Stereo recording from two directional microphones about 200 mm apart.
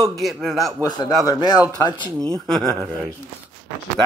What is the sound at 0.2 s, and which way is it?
Speech, centre (ahead or behind).